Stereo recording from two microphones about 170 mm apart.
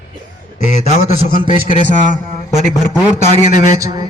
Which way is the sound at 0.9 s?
35° right (ahead or behind).